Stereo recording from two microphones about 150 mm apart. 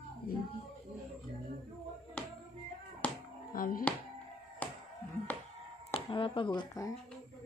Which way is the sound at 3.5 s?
70° left (ahead or behind).